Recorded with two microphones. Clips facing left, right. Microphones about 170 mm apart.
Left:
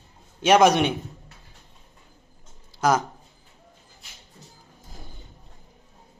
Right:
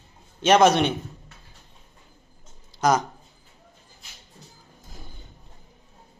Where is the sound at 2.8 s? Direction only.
5° left (ahead or behind).